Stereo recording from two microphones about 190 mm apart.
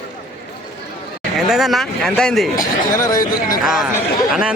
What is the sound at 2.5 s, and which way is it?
Speech, 45° left (ahead or behind).